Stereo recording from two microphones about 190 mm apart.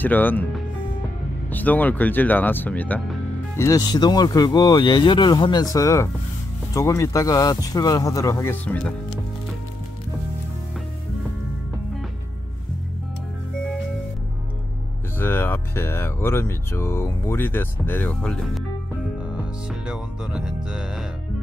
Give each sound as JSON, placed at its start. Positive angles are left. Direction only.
{"t": 0.0, "sound": "speech", "side_deg": 10}
{"t": 1.5, "sound": "speech", "side_deg": 10}
{"t": 15.1, "sound": "speech", "side_deg": 10}
{"t": 19.3, "sound": "music", "side_deg": -5}